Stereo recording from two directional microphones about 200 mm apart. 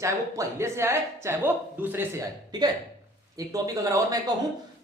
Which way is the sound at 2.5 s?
20° right (ahead or behind).